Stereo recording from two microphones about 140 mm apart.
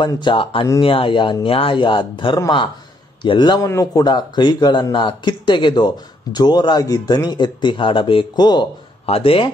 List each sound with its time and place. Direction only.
0.0 s speech: 35° left (ahead or behind)
9.0 s speech: 45° left (ahead or behind)